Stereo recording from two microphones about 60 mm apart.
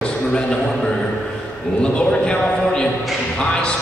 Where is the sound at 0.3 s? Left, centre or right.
Centre.